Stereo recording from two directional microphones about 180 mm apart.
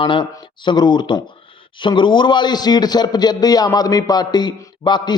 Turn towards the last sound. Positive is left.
turn(degrees=25)  # may be behind; listen again after turning